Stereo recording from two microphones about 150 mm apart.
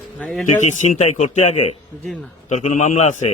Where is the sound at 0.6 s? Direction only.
50° left (ahead or behind).